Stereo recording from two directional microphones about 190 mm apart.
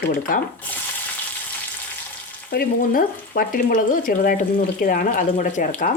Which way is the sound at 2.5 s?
50° left (ahead or behind).